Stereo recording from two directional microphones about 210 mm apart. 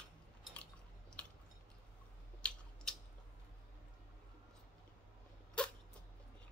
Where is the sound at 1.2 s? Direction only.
5° left (ahead or behind).